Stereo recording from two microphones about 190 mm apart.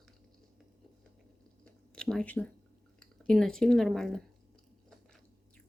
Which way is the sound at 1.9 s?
5° left (ahead or behind).